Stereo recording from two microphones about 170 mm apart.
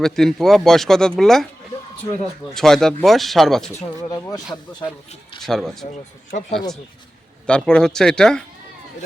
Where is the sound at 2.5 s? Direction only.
Centre (ahead or behind).